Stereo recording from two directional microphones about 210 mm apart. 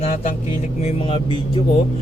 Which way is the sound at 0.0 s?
35° left (ahead or behind).